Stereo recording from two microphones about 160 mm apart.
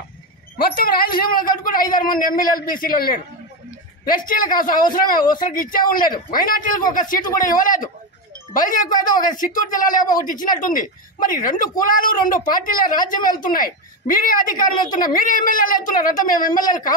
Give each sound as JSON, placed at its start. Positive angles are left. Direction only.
{"t": 0.6, "sound": "a man's voice", "side_deg": 65}